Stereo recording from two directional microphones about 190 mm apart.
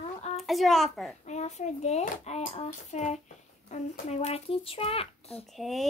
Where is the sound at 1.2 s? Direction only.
35° left (ahead or behind).